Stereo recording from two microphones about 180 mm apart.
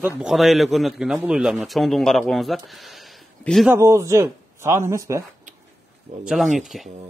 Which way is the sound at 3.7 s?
15° right (ahead or behind).